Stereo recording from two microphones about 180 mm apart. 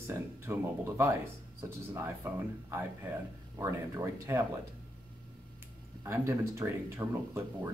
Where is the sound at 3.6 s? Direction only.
15° right (ahead or behind).